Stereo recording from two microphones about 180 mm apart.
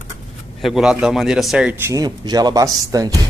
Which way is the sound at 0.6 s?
5° right (ahead or behind).